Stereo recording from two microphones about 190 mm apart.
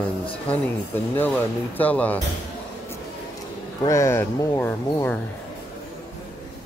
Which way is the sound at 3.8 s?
15° left (ahead or behind).